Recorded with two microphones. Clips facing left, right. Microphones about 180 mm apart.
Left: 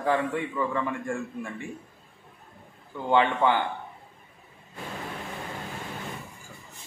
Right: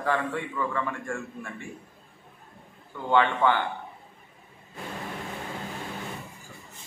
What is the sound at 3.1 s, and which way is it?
Speech, 15° left (ahead or behind).